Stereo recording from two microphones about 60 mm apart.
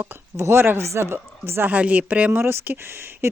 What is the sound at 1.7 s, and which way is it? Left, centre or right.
Speech, right.